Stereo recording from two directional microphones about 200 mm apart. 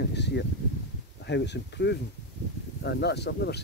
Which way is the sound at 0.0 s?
55° left (ahead or behind).